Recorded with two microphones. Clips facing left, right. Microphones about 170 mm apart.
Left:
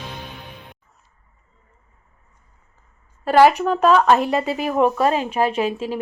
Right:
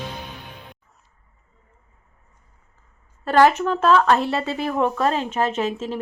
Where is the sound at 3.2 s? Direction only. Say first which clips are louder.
Left 2 dB; 10° left (ahead or behind).